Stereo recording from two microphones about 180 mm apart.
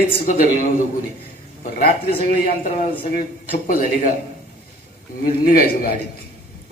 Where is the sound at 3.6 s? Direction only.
50° left (ahead or behind).